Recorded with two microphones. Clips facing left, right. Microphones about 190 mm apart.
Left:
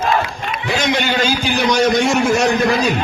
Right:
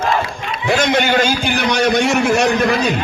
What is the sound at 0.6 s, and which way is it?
A man's voice, 50° right (ahead or behind).